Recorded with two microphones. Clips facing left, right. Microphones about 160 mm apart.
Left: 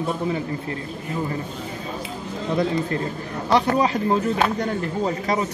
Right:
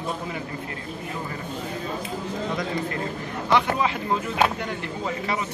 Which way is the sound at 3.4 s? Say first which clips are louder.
Left 3 dB; 35° left (ahead or behind).